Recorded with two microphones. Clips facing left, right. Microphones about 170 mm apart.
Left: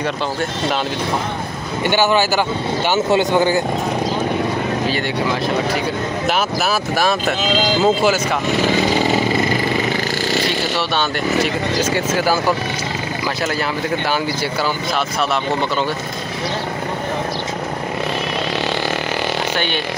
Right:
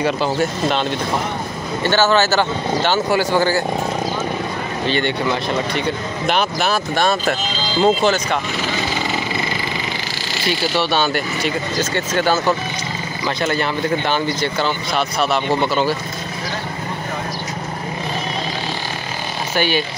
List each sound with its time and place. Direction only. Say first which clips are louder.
1.9 s speech: even; 15° left (ahead or behind)
4.8 s speech: right 1 dB; 5° left (ahead or behind)
6.2 s speech: right 2 dB; 5° left (ahead or behind)
10.8 s speech: right 1 dB; centre (ahead or behind)